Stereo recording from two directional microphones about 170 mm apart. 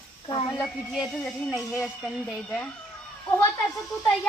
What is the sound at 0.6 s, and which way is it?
Speech, centre (ahead or behind).